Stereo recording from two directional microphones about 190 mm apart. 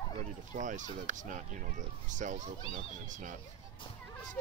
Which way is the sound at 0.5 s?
40° right (ahead or behind).